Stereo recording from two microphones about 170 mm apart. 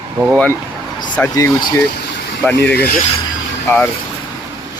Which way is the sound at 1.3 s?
25° left (ahead or behind).